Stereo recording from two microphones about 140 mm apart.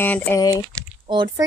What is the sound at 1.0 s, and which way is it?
Speech, 35° right (ahead or behind).